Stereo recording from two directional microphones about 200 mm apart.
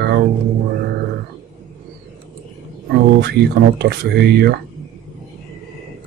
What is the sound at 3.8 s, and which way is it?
Speech, 55° right (ahead or behind).